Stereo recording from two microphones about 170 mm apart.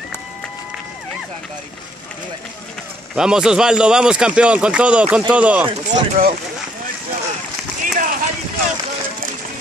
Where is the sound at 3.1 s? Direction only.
5° right (ahead or behind).